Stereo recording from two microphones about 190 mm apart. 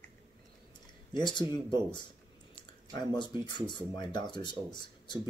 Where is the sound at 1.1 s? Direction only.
25° left (ahead or behind).